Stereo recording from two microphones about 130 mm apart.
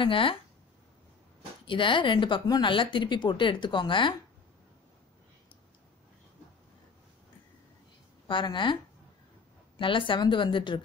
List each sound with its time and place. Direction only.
0.0 s a woman's voice: 40° left (ahead or behind)
1.7 s a woman's voice: 40° left (ahead or behind)
8.3 s a woman's voice: 40° left (ahead or behind)
9.8 s a woman's voice: 40° left (ahead or behind)